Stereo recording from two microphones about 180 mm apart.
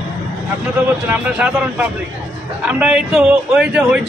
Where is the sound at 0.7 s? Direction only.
10° right (ahead or behind).